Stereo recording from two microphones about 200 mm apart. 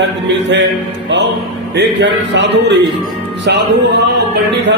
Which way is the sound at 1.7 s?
60° right (ahead or behind).